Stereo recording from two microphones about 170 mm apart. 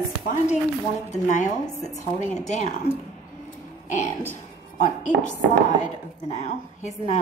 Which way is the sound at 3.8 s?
45° left (ahead or behind).